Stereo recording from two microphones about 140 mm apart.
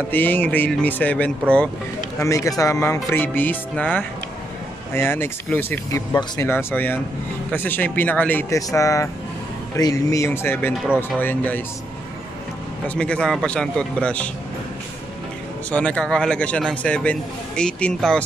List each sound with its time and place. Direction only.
0.1 s a man's voice: 15° left (ahead or behind)
2.1 s a man's voice: 20° left (ahead or behind)
6.4 s a man's voice: 15° left (ahead or behind)
8.5 s a man's voice: 25° left (ahead or behind)
12.8 s a man's voice: 10° left (ahead or behind)
15.7 s a man's voice: 10° left (ahead or behind)